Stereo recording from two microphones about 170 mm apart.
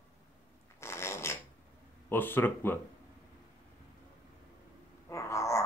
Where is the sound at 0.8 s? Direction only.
15° left (ahead or behind).